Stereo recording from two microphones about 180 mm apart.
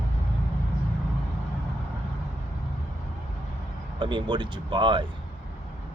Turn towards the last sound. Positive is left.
turn(degrees=-25)  # may be behind; listen again after turning